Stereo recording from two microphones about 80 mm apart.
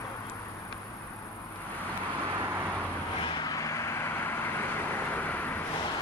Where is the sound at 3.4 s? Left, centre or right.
Left.